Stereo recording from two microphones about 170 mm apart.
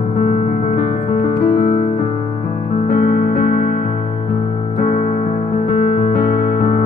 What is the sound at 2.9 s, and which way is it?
Music, 60° left (ahead or behind).